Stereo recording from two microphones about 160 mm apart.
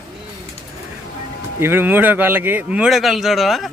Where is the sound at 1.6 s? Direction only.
15° right (ahead or behind).